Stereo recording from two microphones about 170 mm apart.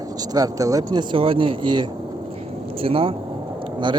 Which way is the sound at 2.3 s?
35° right (ahead or behind).